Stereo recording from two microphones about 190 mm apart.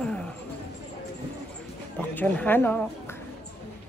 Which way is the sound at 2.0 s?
10° left (ahead or behind).